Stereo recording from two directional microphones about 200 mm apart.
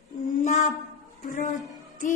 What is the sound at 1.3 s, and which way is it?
Music, 40° left (ahead or behind).